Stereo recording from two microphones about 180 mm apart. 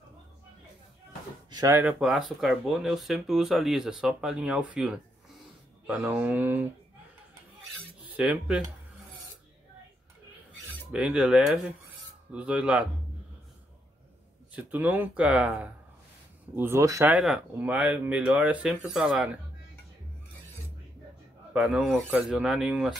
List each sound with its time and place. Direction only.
1.5 s speech: 20° right (ahead or behind)
1.8 s speech: 5° right (ahead or behind)
8.2 s speech: 5° right (ahead or behind)
10.9 s speech: 5° right (ahead or behind)
14.5 s speech: 10° right (ahead or behind)
17.2 s speech: 5° right (ahead or behind)
21.5 s speech: 5° right (ahead or behind)